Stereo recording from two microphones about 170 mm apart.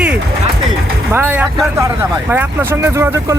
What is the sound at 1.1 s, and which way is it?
Vehicle, 10° right (ahead or behind).